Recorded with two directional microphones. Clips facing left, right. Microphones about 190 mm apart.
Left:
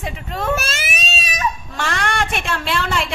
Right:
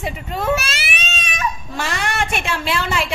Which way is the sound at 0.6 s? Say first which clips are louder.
Left 2 dB; 45° left (ahead or behind).